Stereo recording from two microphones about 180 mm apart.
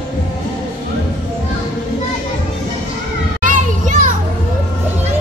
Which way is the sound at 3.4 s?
50° right (ahead or behind).